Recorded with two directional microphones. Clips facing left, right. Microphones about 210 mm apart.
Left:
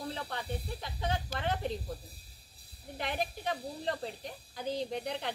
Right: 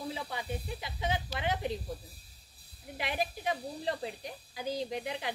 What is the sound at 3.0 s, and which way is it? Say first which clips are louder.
A woman's voice: right 1 dB; 5° right (ahead or behind).